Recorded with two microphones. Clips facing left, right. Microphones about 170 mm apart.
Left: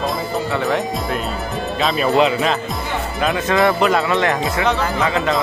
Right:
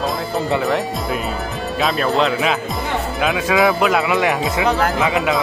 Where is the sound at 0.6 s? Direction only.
Centre (ahead or behind).